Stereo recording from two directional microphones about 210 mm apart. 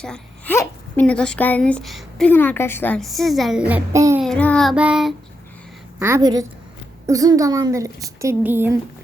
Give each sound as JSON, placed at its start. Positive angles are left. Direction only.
{"t": 0.0, "sound": "a woman's voice", "side_deg": 5}
{"t": 4.2, "sound": "a woman's voice", "side_deg": 5}
{"t": 6.0, "sound": "a woman's voice", "side_deg": -15}